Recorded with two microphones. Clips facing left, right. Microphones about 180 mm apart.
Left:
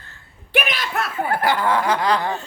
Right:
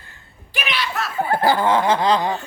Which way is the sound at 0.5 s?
50° left (ahead or behind).